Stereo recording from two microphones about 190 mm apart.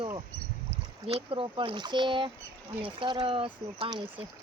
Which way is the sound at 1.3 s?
30° right (ahead or behind).